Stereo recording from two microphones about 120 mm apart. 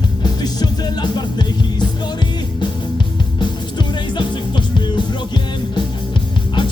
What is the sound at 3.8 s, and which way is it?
Music, 40° left (ahead or behind).